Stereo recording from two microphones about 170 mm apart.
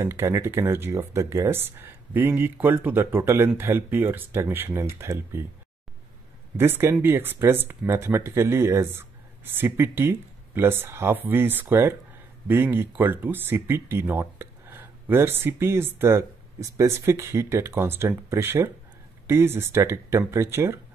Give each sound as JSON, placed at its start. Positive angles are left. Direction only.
{"t": 0.0, "sound": "speech", "side_deg": -15}
{"t": 6.5, "sound": "speech", "side_deg": -15}